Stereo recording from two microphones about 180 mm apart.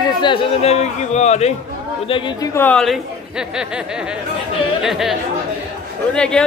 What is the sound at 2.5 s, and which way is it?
A man's voice, 10° left (ahead or behind).